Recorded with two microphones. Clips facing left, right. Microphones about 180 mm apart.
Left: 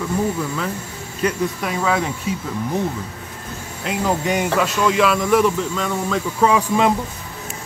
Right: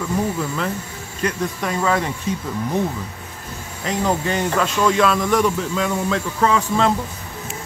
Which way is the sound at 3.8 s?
5° left (ahead or behind).